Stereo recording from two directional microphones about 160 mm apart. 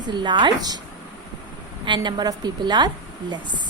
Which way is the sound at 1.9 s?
30° right (ahead or behind).